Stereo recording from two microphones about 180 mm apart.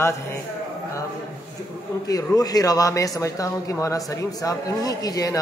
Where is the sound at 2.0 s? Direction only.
20° left (ahead or behind).